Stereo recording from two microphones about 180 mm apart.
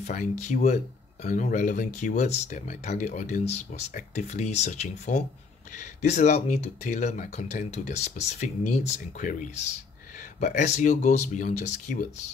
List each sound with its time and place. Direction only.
0.0 s speech: 45° left (ahead or behind)